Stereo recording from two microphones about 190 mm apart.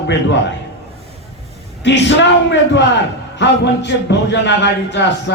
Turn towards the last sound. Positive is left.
turn(degrees=70)  # may be behind; listen again after turning